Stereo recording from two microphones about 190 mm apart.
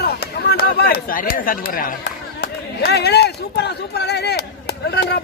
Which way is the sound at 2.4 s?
60° left (ahead or behind).